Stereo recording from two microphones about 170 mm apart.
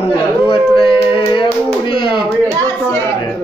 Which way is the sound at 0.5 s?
30° left (ahead or behind).